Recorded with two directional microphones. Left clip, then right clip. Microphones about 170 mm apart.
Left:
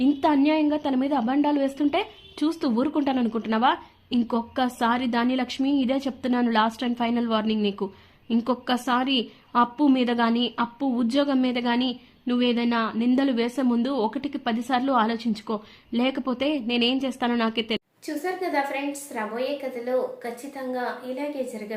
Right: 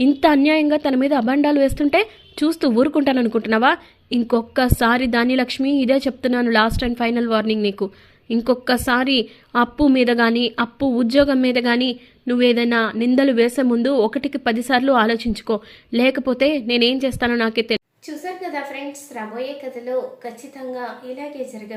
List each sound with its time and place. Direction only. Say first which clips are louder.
0.0 s a woman's voice: right 6 dB; 20° right (ahead or behind)
18.0 s a woman's voice: even; centre (ahead or behind)